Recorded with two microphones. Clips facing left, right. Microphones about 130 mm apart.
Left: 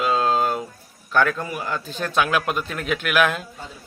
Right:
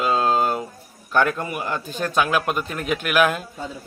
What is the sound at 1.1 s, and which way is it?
A man's voice, 10° right (ahead or behind).